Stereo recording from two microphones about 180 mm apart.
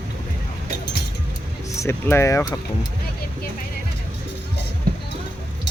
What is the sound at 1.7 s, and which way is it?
Speech, 15° left (ahead or behind).